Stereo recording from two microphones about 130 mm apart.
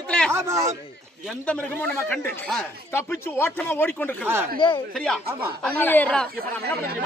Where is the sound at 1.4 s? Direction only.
10° left (ahead or behind).